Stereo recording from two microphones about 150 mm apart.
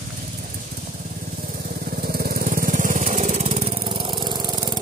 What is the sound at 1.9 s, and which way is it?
Vehicle, 85° right.